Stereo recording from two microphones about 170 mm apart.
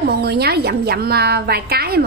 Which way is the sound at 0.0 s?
70° right (ahead or behind).